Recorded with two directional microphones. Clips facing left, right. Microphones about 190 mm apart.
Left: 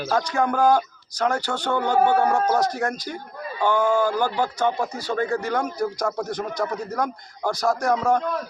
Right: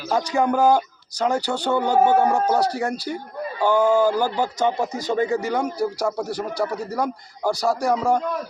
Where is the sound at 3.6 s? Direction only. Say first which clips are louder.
Right 3 dB; 15° right (ahead or behind).